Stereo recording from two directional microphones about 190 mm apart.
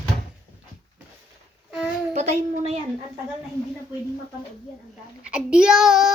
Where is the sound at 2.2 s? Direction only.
35° right (ahead or behind).